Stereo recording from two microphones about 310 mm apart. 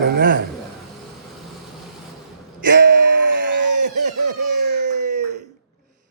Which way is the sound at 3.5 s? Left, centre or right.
Right.